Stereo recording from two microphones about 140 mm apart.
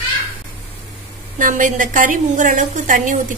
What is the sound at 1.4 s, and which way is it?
A woman's voice, 65° right (ahead or behind).